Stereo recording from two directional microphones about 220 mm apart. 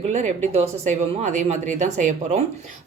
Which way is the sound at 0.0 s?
30° right (ahead or behind).